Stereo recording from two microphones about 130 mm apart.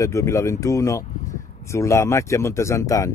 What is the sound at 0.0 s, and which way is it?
Speech, 25° left (ahead or behind).